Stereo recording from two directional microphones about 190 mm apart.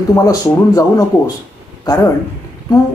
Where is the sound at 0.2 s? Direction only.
15° left (ahead or behind).